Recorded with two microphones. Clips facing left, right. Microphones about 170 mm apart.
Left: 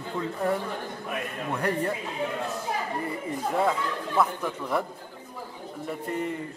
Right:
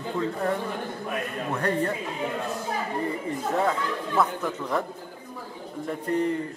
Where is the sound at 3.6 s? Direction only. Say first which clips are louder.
Even; 5° left (ahead or behind).